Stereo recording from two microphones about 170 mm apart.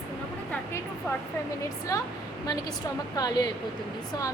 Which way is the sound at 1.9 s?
20° left (ahead or behind).